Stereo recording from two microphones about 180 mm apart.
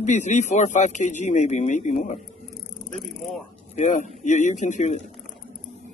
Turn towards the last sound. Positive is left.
turn(degrees=40)  # may be behind; listen again after turning